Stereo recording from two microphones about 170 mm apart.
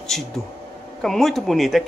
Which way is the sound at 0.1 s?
Centre (ahead or behind).